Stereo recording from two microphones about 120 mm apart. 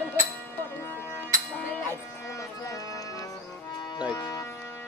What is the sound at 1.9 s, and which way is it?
Music, 25° left (ahead or behind).